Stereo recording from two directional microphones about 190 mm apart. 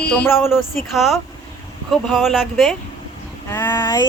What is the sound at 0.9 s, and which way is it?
Speech, centre (ahead or behind).